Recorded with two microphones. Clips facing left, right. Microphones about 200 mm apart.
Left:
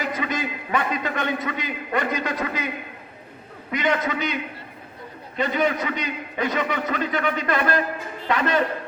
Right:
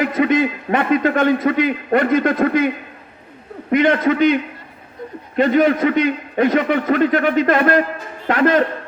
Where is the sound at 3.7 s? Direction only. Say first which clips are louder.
Right 9 dB; 55° right (ahead or behind).